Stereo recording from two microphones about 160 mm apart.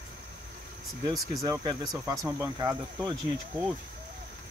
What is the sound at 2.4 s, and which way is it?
Speech, 20° right (ahead or behind).